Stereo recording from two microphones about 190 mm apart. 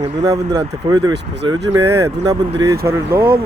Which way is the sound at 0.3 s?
20° right (ahead or behind).